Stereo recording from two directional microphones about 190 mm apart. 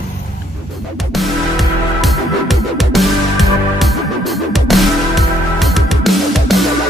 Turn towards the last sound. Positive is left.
turn(degrees=0)  # may be behind; listen again after turning